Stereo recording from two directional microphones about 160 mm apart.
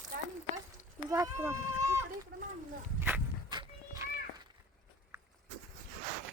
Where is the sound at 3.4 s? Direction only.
25° right (ahead or behind).